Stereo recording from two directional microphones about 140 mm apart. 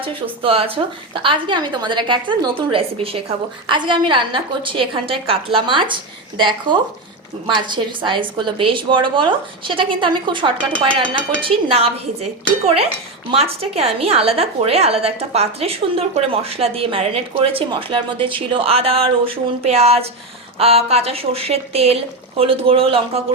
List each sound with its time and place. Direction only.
0.0 s a woman's voice: 40° right (ahead or behind)